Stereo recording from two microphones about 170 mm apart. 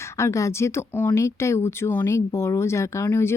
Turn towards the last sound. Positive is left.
turn(degrees=15)  # may be behind; listen again after turning